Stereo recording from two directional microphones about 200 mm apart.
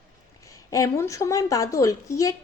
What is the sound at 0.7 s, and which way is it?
A woman's voice, 15° left (ahead or behind).